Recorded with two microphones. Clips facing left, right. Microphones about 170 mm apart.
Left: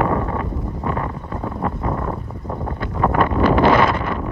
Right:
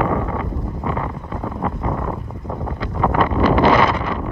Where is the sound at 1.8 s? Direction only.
10° right (ahead or behind).